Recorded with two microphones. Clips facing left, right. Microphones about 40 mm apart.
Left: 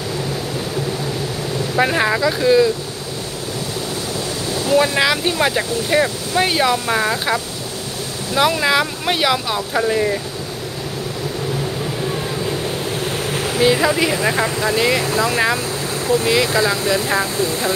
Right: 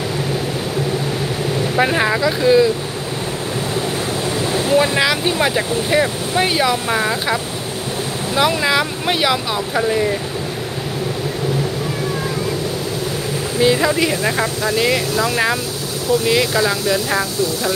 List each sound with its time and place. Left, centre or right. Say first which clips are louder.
1.8 s speech: even; centre
4.9 s speech: even; centre
8.4 s speech: left 1 dB; centre
13.6 s speech: even; centre
14.4 s speech: even; left